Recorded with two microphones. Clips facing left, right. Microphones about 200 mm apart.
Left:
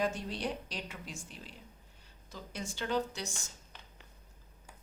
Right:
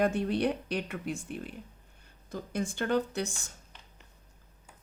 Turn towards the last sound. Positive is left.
turn(degrees=-55)  # may be behind; listen again after turning